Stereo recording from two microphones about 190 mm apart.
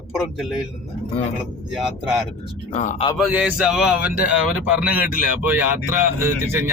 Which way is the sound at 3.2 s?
10° right (ahead or behind).